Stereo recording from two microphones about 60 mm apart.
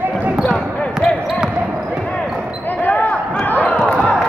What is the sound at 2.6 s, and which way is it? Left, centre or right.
Basketball bounce, left.